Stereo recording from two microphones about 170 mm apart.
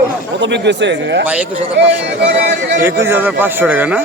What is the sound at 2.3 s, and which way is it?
Speech, 90° right.